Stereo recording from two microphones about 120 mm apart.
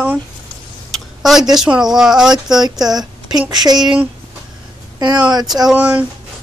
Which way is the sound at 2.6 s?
35° right (ahead or behind).